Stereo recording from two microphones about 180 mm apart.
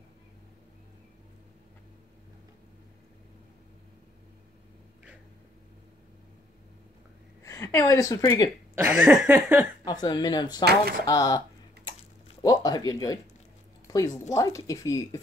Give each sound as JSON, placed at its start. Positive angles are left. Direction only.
{"t": 7.4, "sound": "a woman's voice", "side_deg": 15}
{"t": 8.7, "sound": "speech", "side_deg": -10}
{"t": 9.8, "sound": "a woman's voice", "side_deg": 25}
{"t": 10.6, "sound": "speech", "side_deg": -60}
{"t": 11.1, "sound": "typing", "side_deg": 20}
{"t": 12.4, "sound": "a woman's voice", "side_deg": 20}
{"t": 13.8, "sound": "a sound", "side_deg": 20}
{"t": 14.3, "sound": "a woman's voice", "side_deg": 20}